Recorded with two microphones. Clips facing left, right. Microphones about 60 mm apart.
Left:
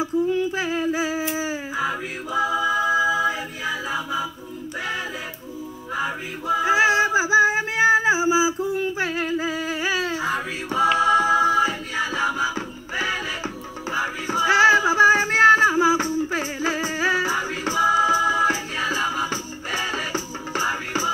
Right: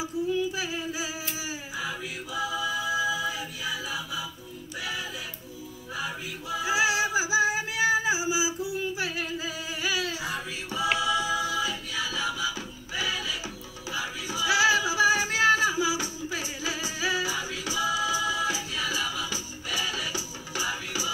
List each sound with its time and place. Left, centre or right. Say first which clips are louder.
0.0 s a sound: left 6 dB; left
1.3 s a capella: left 9 dB; left
5.9 s male singing: left 7 dB; left